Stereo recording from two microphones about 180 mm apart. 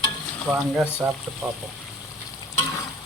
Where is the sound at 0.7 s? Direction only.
10° right (ahead or behind).